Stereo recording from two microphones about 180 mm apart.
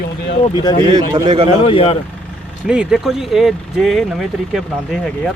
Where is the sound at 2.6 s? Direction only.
5° right (ahead or behind).